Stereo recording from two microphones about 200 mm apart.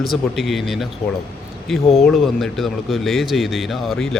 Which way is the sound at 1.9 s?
Centre (ahead or behind).